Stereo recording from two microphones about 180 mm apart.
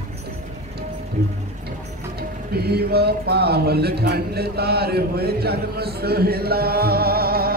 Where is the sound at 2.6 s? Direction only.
60° right (ahead or behind).